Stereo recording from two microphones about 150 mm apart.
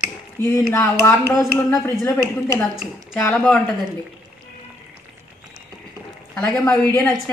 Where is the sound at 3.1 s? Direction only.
10° left (ahead or behind).